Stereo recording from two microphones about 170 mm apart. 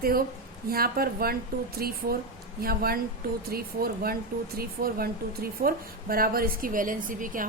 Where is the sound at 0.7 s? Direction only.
60° right (ahead or behind).